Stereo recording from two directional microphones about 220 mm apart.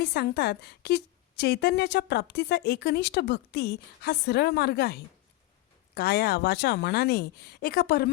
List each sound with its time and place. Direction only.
0.0 s a woman's voice: 50° left (ahead or behind)